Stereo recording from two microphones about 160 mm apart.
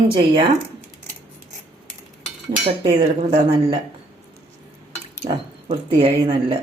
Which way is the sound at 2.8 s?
40° right (ahead or behind).